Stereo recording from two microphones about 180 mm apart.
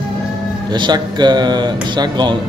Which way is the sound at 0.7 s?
25° right (ahead or behind).